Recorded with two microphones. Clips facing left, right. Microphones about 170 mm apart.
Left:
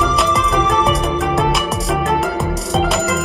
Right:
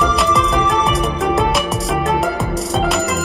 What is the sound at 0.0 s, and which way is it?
Music, centre (ahead or behind).